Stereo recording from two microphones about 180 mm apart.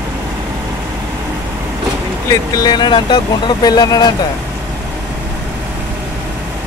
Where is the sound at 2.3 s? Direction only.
20° left (ahead or behind).